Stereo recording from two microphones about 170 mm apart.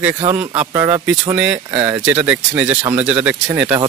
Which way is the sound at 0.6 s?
10° right (ahead or behind).